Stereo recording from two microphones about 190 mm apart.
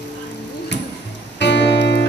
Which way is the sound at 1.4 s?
65° left (ahead or behind).